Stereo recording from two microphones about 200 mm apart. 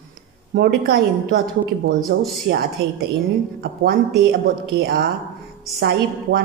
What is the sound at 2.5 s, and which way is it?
Speech, 65° right (ahead or behind).